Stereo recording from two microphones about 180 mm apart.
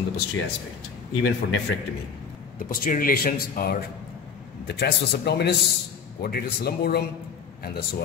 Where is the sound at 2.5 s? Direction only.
50° left (ahead or behind).